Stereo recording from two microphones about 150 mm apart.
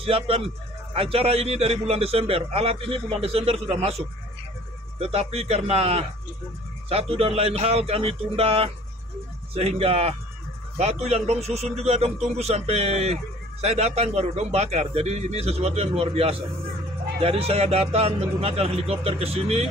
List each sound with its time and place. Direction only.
0.0 s a man's voice: 40° right (ahead or behind)